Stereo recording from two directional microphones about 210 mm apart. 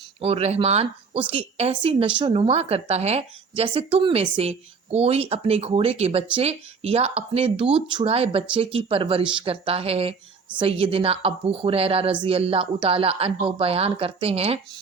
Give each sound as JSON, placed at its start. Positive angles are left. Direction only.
{"t": 0.2, "sound": "a woman's voice", "side_deg": -30}